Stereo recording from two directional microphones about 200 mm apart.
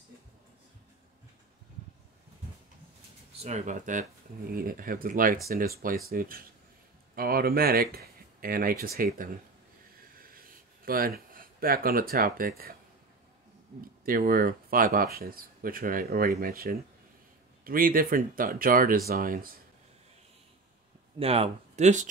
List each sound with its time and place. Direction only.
3.4 s speech: 35° right (ahead or behind)
10.2 s a sound: 45° right (ahead or behind)
13.7 s speech: 45° right (ahead or behind)
21.2 s speech: 30° right (ahead or behind)